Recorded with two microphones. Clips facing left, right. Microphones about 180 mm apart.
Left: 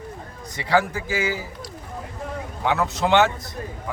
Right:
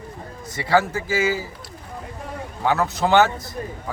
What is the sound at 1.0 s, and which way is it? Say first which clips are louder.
Speech: right 3 dB; 15° left (ahead or behind).